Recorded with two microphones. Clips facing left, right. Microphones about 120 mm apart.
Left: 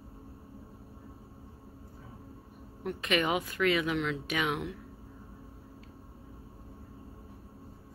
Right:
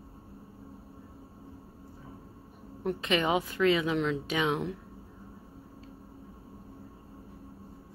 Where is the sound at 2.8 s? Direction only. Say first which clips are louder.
Right 2 dB; 25° right (ahead or behind).